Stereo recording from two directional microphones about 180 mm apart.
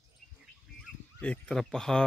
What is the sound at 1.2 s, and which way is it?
Speech, 5° left (ahead or behind).